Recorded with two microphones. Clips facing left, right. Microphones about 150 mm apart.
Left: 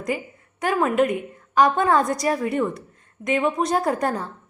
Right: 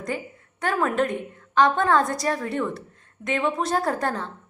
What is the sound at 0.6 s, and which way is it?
A woman's voice, 5° left (ahead or behind).